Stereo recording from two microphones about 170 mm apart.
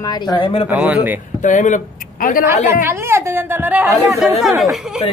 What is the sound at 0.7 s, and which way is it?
Speech, 10° right (ahead or behind).